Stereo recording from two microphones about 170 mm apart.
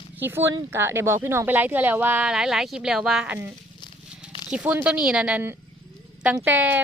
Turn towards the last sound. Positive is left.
turn(degrees=-10)  # may be behind; listen again after turning